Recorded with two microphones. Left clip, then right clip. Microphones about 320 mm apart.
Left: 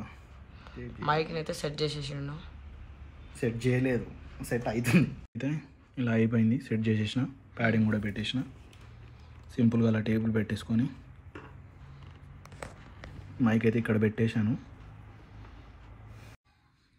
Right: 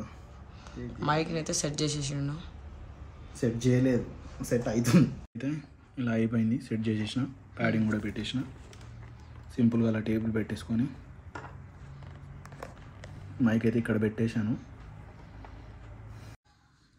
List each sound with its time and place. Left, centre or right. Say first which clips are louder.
0.7 s speech: even; centre
3.3 s speech: right 2 dB; centre
5.4 s speech: even; centre
9.6 s speech: even; left
13.4 s speech: left 1 dB; left